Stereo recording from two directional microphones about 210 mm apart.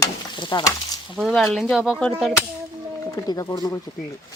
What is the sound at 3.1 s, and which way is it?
Speech, 15° left (ahead or behind).